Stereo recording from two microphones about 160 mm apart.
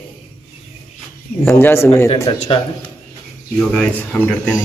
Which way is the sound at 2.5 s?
35° left (ahead or behind).